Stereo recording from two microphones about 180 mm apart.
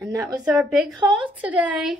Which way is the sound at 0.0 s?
15° right (ahead or behind).